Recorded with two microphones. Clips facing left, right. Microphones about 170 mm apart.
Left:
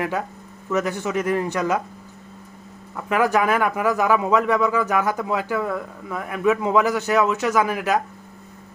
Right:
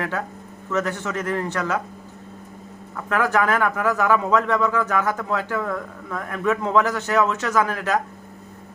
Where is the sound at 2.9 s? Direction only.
15° left (ahead or behind).